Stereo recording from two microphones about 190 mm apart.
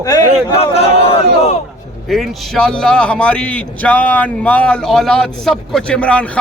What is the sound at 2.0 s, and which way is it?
A man's voice, centre (ahead or behind).